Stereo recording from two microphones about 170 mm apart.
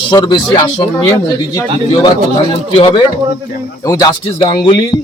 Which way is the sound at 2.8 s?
30° left (ahead or behind).